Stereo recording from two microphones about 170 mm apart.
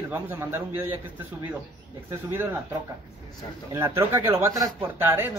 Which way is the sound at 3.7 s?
15° right (ahead or behind).